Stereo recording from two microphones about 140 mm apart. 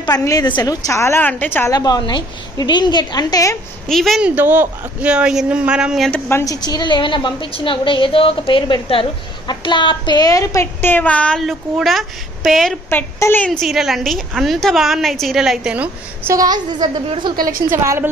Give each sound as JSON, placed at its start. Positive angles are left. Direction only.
{"t": 0.0, "sound": "a woman's voice", "side_deg": 25}
{"t": 1.7, "sound": "a woman's voice", "side_deg": 30}
{"t": 3.8, "sound": "a woman's voice", "side_deg": 0}
{"t": 4.4, "sound": "speech", "side_deg": -15}
{"t": 6.2, "sound": "a woman's voice", "side_deg": 20}
{"t": 12.9, "sound": "speech", "side_deg": 15}
{"t": 13.5, "sound": "a woman's voice", "side_deg": 0}
{"t": 16.3, "sound": "a woman's voice", "side_deg": -30}
{"t": 17.5, "sound": "a woman's voice", "side_deg": -90}